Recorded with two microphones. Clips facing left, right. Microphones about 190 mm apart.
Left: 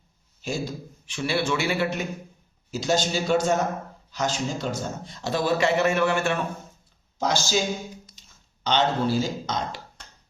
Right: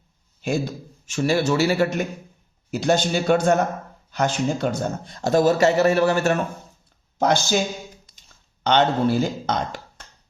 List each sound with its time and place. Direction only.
0.4 s speech: 60° right (ahead or behind)
2.6 s speech: 60° right (ahead or behind); by 6.4 s 40° right (ahead or behind)
7.2 s speech: 60° right (ahead or behind)
8.2 s a sound: 55° right (ahead or behind)
8.6 s speech: 60° right (ahead or behind)